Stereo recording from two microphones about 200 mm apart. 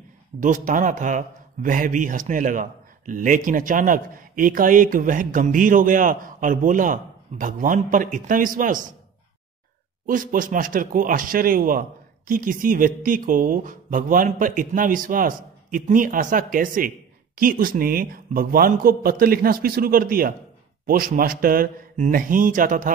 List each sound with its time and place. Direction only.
0.4 s speech: 40° right (ahead or behind)
10.0 s speech: 40° right (ahead or behind)